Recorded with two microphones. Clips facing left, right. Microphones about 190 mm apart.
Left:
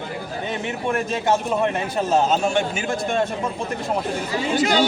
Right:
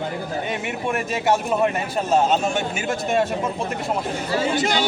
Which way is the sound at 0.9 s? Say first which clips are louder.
Even; 10° right (ahead or behind).